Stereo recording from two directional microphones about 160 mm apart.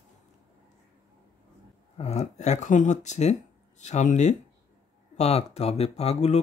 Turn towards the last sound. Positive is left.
turn(degrees=40)  # may be behind; listen again after turning